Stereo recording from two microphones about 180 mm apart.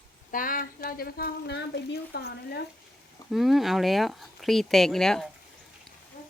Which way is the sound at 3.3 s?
Centre (ahead or behind).